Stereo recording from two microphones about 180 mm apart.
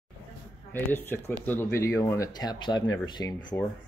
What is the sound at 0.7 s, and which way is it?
Speech, 10° left (ahead or behind).